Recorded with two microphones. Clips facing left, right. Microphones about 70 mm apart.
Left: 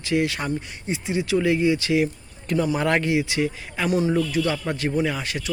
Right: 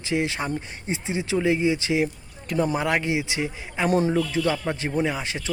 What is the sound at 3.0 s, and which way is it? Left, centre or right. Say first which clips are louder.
Speech: left 3 dB; right.